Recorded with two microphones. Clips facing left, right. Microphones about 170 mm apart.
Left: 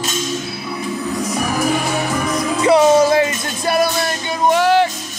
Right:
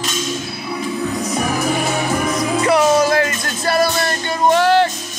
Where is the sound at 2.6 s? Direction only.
25° left (ahead or behind).